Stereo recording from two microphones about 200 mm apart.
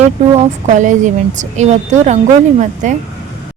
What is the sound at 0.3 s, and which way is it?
A woman's voice, 40° right (ahead or behind).